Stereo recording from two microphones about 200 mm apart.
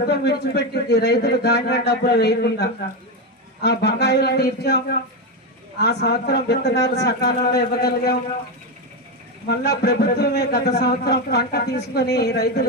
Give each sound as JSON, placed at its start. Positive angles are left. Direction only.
{"t": 0.0, "sound": "a man's voice", "side_deg": 55}
{"t": 9.5, "sound": "a man's voice", "side_deg": 55}